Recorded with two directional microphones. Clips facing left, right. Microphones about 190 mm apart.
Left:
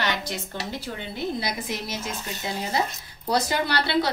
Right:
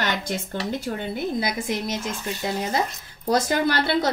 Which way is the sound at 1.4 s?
50° right (ahead or behind).